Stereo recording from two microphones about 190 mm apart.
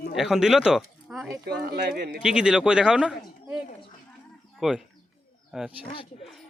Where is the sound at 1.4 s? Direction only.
55° right (ahead or behind).